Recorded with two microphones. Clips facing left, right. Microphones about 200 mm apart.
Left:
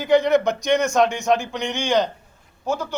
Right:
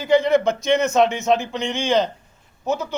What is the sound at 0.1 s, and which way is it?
Speech, centre (ahead or behind).